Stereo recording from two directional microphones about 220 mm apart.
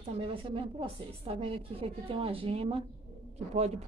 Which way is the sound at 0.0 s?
25° right (ahead or behind).